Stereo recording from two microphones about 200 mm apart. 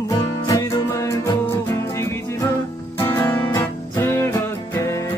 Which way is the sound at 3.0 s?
15° left (ahead or behind).